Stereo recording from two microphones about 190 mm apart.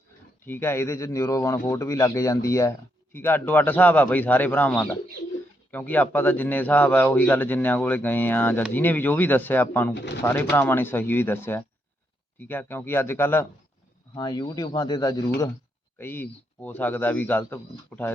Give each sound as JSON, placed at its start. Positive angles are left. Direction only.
{"t": 0.4, "sound": "speech", "side_deg": 10}
{"t": 14.2, "sound": "speech", "side_deg": 20}